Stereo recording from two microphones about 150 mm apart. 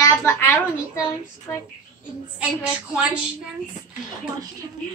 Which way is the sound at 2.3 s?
5° right (ahead or behind).